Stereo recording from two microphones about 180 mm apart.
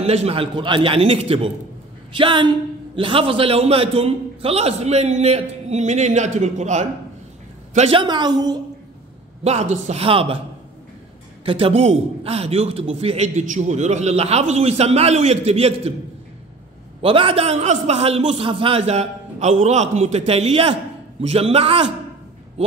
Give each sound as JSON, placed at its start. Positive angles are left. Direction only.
{"t": 0.0, "sound": "a man's voice", "side_deg": -35}
{"t": 9.4, "sound": "a man's voice", "side_deg": -35}
{"t": 11.4, "sound": "a man's voice", "side_deg": -30}
{"t": 17.0, "sound": "a man's voice", "side_deg": -30}